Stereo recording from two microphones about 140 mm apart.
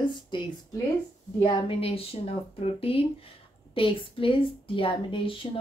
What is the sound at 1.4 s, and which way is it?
Speech, 40° left (ahead or behind).